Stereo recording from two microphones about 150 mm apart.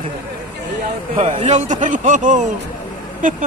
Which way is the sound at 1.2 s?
55° right (ahead or behind).